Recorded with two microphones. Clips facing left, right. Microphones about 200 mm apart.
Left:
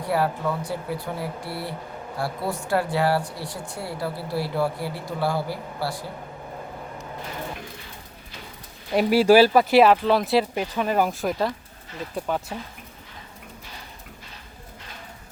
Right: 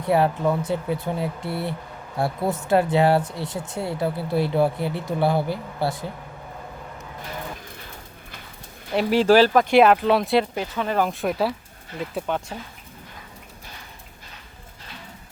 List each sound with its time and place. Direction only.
0.0 s speech: 20° right (ahead or behind)
9.0 s speech: 10° left (ahead or behind)
10.5 s speech: 15° left (ahead or behind)